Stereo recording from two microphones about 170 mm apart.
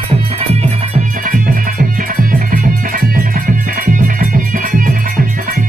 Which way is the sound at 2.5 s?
50° right (ahead or behind).